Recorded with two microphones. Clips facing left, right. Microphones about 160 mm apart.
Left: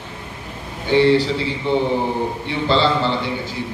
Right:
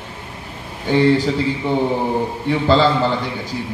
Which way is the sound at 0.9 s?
45° right (ahead or behind).